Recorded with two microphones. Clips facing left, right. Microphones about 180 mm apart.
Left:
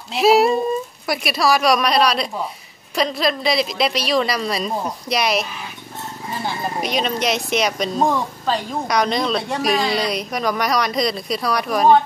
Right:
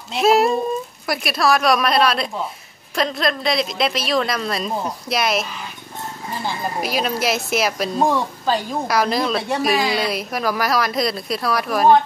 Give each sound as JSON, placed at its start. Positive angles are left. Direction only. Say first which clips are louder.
{"t": 0.1, "sound": "a woman's voice", "louder": "left 1 dB", "side_deg": 0}